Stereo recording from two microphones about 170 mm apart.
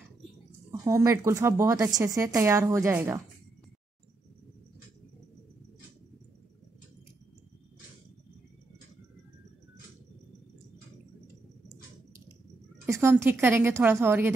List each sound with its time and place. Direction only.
0.7 s speech: 15° right (ahead or behind)
12.8 s speech: 15° right (ahead or behind)